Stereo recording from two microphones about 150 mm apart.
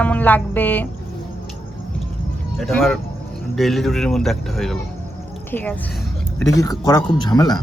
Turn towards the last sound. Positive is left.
turn(degrees=30)  # may be behind; listen again after turning